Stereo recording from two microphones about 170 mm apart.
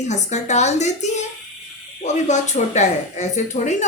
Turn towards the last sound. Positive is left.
turn(degrees=45)  # may be behind; listen again after turning